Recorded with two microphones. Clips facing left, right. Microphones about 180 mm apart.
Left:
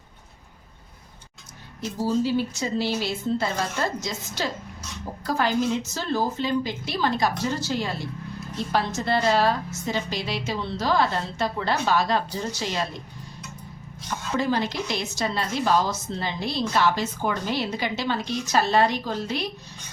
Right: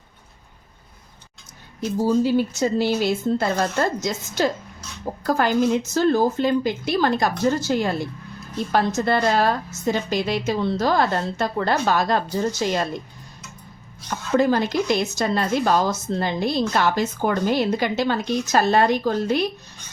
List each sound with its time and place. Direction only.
1.8 s a woman's voice: 50° right (ahead or behind)
14.3 s a woman's voice: 45° right (ahead or behind)